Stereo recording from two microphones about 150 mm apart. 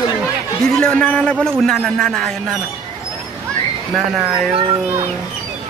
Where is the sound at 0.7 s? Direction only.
5° left (ahead or behind).